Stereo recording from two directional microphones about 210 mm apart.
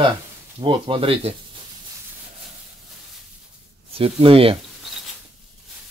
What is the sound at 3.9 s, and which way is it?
Speech, 25° right (ahead or behind).